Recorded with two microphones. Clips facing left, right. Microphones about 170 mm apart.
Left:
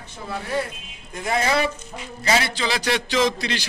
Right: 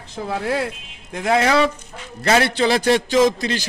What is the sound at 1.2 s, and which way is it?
Speech, 75° right (ahead or behind).